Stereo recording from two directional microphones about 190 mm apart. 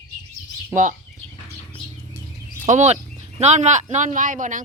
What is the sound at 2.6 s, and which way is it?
Speech, 35° right (ahead or behind).